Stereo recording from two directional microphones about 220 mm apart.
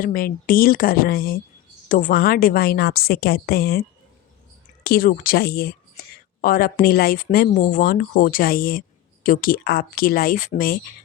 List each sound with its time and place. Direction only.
0.0 s a woman's voice: 40° left (ahead or behind)